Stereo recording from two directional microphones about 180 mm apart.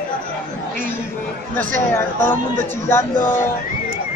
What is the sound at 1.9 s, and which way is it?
Speech, 10° left (ahead or behind).